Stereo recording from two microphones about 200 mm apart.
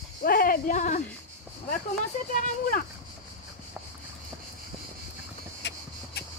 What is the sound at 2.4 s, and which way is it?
Speech, 45° left (ahead or behind).